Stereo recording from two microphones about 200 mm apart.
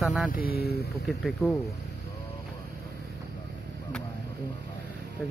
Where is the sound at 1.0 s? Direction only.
Centre (ahead or behind).